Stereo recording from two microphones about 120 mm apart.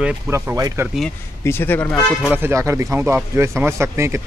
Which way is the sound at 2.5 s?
25° right (ahead or behind).